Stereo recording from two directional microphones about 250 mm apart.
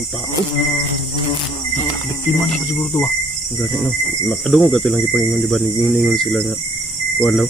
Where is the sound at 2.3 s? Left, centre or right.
Centre.